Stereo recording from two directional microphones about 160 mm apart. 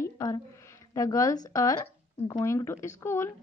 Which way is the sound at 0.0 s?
20° left (ahead or behind).